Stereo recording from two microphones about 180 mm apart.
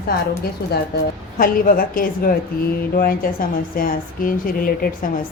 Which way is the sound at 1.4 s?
50° left (ahead or behind).